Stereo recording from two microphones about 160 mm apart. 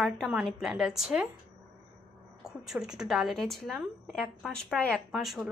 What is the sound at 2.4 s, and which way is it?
A woman's voice, 5° right (ahead or behind).